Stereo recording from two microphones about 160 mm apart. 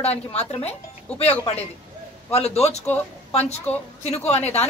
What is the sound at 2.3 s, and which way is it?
A woman's voice, 40° left (ahead or behind).